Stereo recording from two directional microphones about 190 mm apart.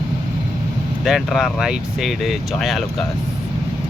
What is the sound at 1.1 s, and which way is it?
Speech, centre (ahead or behind).